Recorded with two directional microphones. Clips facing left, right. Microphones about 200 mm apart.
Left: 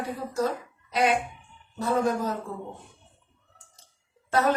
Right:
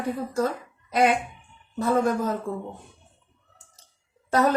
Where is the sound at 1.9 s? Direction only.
50° right (ahead or behind).